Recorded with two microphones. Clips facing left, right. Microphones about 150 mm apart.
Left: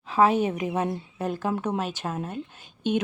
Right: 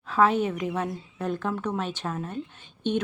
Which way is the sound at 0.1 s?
10° left (ahead or behind).